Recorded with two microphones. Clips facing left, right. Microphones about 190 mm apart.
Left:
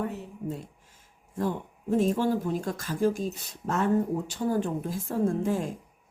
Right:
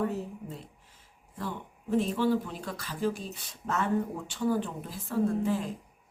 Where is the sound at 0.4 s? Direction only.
45° left (ahead or behind).